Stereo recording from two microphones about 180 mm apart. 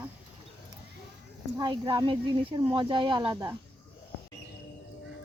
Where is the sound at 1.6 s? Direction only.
25° right (ahead or behind).